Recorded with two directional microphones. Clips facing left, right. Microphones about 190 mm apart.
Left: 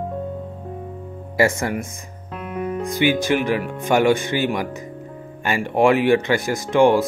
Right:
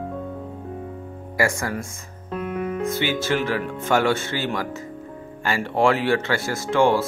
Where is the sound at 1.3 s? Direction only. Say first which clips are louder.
Left 4 dB; 25° left (ahead or behind).